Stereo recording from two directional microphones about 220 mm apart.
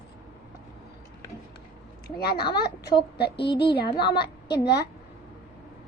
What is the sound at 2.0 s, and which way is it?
Speech, 45° left (ahead or behind).